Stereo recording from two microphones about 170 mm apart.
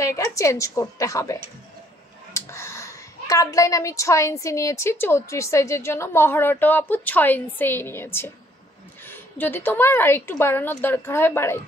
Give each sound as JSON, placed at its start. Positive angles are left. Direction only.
{"t": 0.0, "sound": "a woman's voice", "side_deg": 20}